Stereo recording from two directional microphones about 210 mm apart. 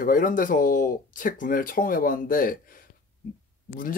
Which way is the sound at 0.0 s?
40° left (ahead or behind).